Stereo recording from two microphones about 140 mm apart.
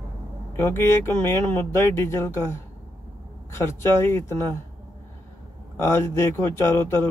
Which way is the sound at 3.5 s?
15° left (ahead or behind).